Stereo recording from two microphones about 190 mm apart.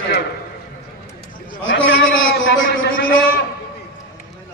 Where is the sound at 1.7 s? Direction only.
80° left.